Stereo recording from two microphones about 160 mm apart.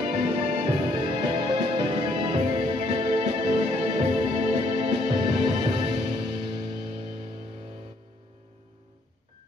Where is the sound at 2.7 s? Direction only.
35° right (ahead or behind).